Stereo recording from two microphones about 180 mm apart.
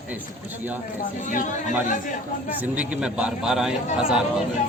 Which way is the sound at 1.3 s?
45° left (ahead or behind).